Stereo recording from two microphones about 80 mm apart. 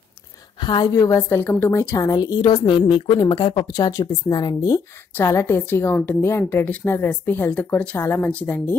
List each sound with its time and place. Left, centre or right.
0.6 s a woman's voice: left
0.9 s a woman's voice: left
1.4 s speech: left
1.7 s speech: left
2.5 s a woman's voice: left
3.6 s speech: left
5.2 s a woman's voice: left